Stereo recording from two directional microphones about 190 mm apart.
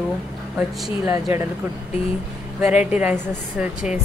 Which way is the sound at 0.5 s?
5° right (ahead or behind).